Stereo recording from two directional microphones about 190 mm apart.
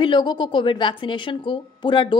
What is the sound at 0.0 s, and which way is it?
A woman's voice, 25° left (ahead or behind).